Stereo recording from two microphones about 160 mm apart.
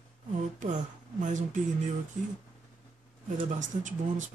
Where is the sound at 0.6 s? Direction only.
50° right (ahead or behind).